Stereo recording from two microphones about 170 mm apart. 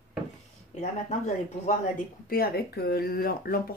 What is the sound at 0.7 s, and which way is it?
Speech, 45° left (ahead or behind).